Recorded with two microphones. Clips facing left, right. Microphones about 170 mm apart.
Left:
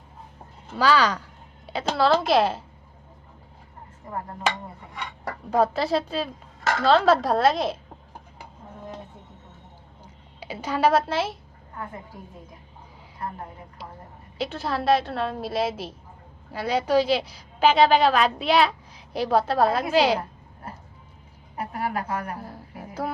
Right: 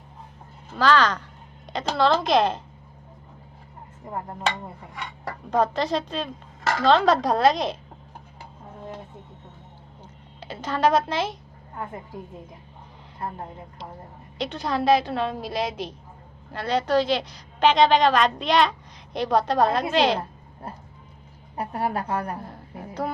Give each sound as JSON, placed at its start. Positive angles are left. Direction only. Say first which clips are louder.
{"t": 0.8, "sound": "a woman's voice", "louder": "right 1 dB", "side_deg": 10}
{"t": 5.2, "sound": "a woman's voice", "louder": "left 1 dB", "side_deg": 5}
{"t": 10.0, "sound": "a woman's voice", "louder": "even", "side_deg": 10}
{"t": 14.3, "sound": "a woman's voice", "louder": "right 1 dB", "side_deg": 5}
{"t": 21.5, "sound": "a woman's voice", "louder": "right 2 dB", "side_deg": -30}
{"t": 22.4, "sound": "a sound", "louder": "right 1 dB", "side_deg": 5}